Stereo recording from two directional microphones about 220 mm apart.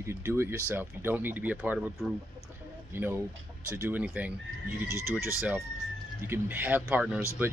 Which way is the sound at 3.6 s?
10° right (ahead or behind).